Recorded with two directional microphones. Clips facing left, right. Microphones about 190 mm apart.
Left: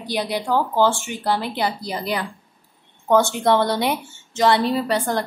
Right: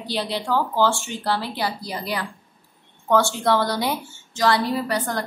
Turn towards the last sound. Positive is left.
turn(degrees=25)  # may be behind; listen again after turning